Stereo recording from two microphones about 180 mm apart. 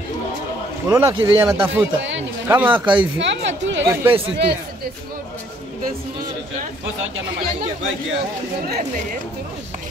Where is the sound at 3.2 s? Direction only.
85° right.